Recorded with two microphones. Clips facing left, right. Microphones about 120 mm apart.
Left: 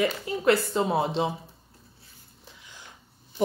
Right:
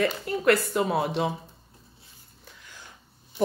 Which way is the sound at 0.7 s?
25° left (ahead or behind).